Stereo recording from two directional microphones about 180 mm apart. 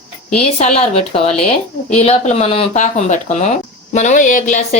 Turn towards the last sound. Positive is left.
turn(degrees=45)  # may be behind; listen again after turning